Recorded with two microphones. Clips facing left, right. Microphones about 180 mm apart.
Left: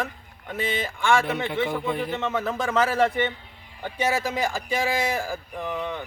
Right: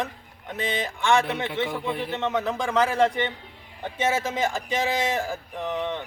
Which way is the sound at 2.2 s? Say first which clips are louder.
Right 1 dB; 20° right (ahead or behind).